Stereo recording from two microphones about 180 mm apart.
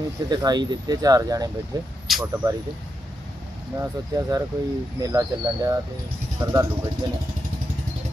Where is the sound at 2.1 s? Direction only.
Centre (ahead or behind).